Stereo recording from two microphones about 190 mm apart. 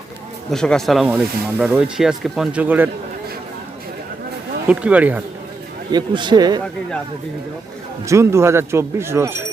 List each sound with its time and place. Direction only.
0.5 s speech: 5° left (ahead or behind)
4.7 s speech: 5° right (ahead or behind)
5.9 s speech: 25° right (ahead or behind)
8.0 s speech: 15° right (ahead or behind)